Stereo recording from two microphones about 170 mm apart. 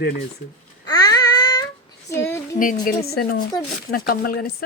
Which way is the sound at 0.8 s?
20° left (ahead or behind).